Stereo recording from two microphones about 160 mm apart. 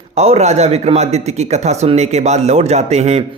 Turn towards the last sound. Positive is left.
turn(degrees=-45)  # may be behind; listen again after turning